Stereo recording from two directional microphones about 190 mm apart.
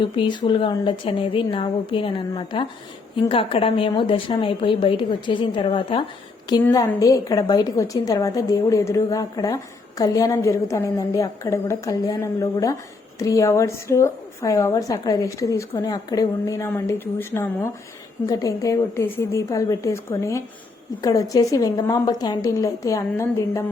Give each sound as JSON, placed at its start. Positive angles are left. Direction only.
{"t": 0.0, "sound": "a woman's voice", "side_deg": 25}